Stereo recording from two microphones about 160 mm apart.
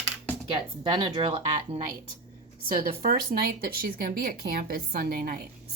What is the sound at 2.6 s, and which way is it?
Speech, 65° right (ahead or behind).